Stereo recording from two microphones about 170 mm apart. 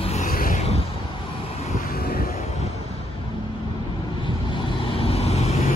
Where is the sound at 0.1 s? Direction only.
55° left (ahead or behind).